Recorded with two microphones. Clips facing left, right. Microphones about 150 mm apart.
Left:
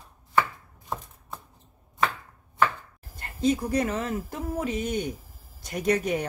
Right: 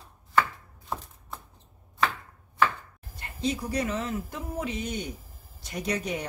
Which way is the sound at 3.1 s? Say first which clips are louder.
Left 6 dB; 45° left (ahead or behind).